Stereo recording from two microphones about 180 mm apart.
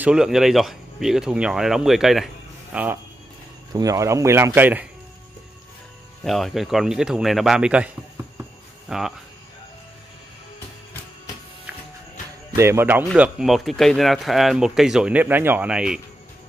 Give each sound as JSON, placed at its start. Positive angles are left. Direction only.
{"t": 0.0, "sound": "speech", "side_deg": -5}
{"t": 6.2, "sound": "speech", "side_deg": 0}
{"t": 12.5, "sound": "speech", "side_deg": -15}